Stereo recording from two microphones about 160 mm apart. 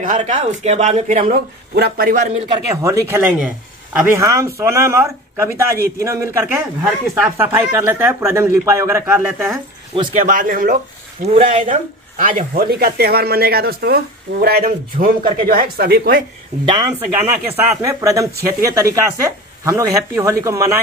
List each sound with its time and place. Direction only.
0.0 s speech: 50° right (ahead or behind)
1.3 s speech: 70° right (ahead or behind)
2.5 s speech: 20° right (ahead or behind)
4.2 s speech: 20° right (ahead or behind)
10.1 s speech: 55° right (ahead or behind)
11.2 s speech: 45° right (ahead or behind); by 16.3 s 70° right (ahead or behind)
17.6 s speech: 20° right (ahead or behind)